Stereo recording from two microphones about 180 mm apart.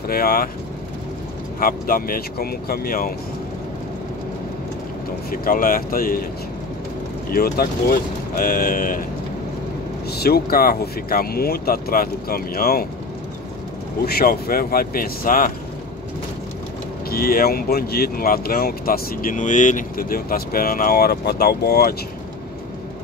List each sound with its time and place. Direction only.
0.1 s speech: 55° left (ahead or behind)
1.6 s speech: 50° left (ahead or behind)
5.3 s speech: 50° left (ahead or behind)
7.3 s speech: 60° left (ahead or behind)
10.1 s speech: 60° left (ahead or behind)
14.0 s speech: 55° left (ahead or behind)
17.1 s speech: 55° left (ahead or behind)